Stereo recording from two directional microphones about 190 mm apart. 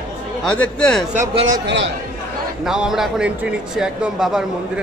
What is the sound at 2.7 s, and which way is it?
Speech, 5° right (ahead or behind).